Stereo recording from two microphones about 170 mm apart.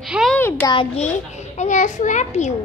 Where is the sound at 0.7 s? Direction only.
30° left (ahead or behind).